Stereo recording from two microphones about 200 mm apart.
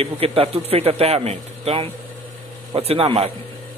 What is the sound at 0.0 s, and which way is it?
A man's voice, 30° right (ahead or behind).